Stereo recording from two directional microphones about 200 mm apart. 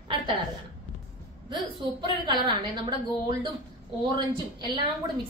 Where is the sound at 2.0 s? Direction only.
25° right (ahead or behind).